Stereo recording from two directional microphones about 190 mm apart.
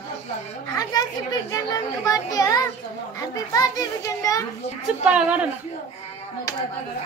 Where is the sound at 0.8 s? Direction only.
20° left (ahead or behind).